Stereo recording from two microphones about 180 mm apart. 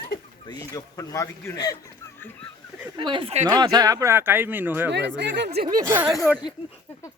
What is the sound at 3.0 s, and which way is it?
Speech, 30° right (ahead or behind).